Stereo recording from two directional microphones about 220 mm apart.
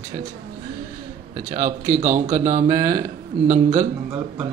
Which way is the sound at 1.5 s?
35° right (ahead or behind).